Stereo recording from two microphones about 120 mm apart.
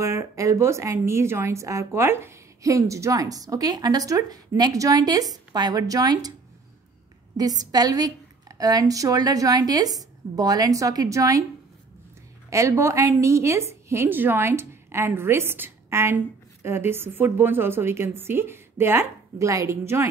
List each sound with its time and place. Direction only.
0.0 s a woman's voice: 25° right (ahead or behind)
7.3 s a woman's voice: 35° right (ahead or behind)
12.4 s a woman's voice: 25° right (ahead or behind)